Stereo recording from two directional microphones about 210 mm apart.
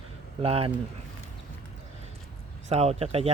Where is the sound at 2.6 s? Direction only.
30° right (ahead or behind).